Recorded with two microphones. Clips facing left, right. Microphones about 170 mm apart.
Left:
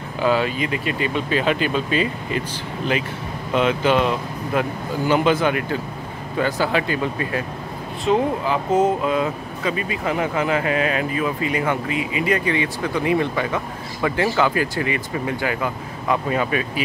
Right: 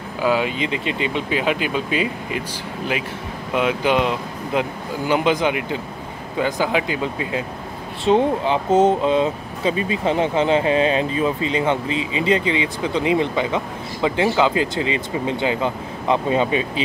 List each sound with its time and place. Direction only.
0.2 s speech: 10° right (ahead or behind)
3.5 s speech: 10° right (ahead or behind)
8.0 s speech: 30° right (ahead or behind)